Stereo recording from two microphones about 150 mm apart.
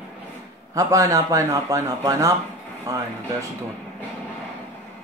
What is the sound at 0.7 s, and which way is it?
Speech, 20° right (ahead or behind).